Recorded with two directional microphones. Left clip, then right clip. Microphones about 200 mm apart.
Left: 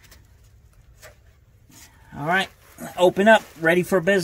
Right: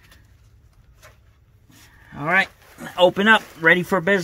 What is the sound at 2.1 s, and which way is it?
Speech, 25° right (ahead or behind).